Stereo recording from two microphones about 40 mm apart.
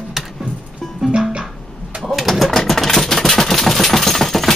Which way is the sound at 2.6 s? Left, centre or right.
Centre.